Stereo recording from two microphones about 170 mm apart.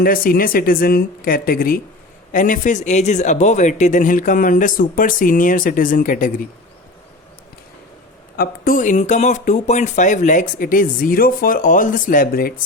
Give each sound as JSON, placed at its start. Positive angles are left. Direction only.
{"t": 0.0, "sound": "speech", "side_deg": 60}
{"t": 8.4, "sound": "speech", "side_deg": 60}